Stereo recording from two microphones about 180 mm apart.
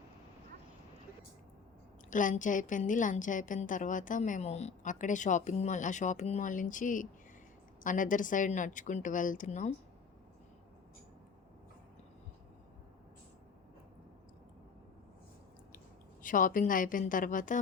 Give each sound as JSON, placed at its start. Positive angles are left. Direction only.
{"t": 2.0, "sound": "a woman's voice", "side_deg": 45}
{"t": 16.2, "sound": "a woman's voice", "side_deg": 50}